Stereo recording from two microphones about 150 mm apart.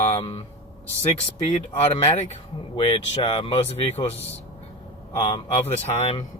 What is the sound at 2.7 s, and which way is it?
Speech, 35° left (ahead or behind).